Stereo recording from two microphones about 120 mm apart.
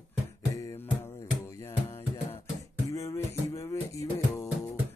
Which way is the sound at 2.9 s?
25° left (ahead or behind).